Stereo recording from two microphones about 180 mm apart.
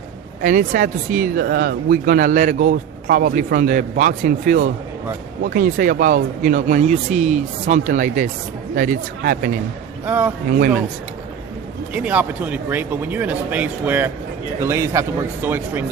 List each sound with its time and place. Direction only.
0.4 s speech: 45° right (ahead or behind)
10.1 s speech: 10° right (ahead or behind)
11.9 s speech: 5° right (ahead or behind)